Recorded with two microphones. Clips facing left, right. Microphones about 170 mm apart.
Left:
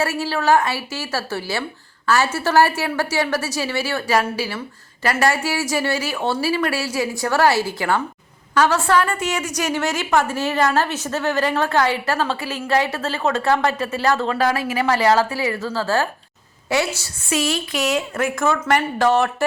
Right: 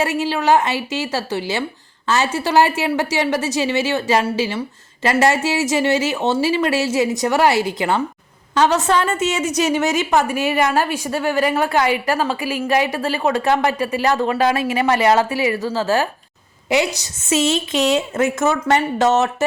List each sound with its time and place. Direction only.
0.0 s a woman's voice: 20° right (ahead or behind)